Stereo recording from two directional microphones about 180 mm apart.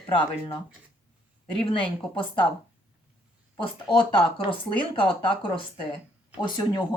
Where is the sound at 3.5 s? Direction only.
25° left (ahead or behind).